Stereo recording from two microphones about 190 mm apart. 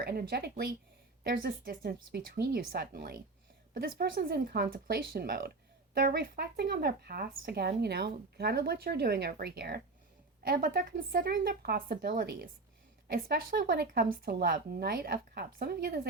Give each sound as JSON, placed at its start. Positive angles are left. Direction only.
{"t": 0.0, "sound": "speech", "side_deg": -55}